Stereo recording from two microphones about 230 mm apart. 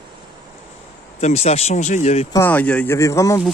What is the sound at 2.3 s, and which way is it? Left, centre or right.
Speech, centre.